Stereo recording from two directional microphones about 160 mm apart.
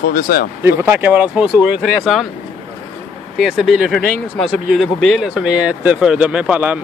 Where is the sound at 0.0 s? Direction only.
65° left (ahead or behind).